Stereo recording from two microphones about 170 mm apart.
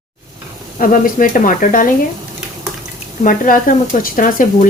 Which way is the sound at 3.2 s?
55° left (ahead or behind).